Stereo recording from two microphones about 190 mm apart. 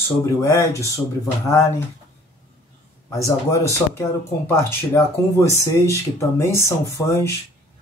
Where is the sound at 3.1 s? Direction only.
15° left (ahead or behind).